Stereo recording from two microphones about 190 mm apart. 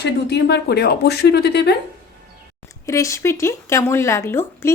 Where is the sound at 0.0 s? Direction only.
60° left (ahead or behind).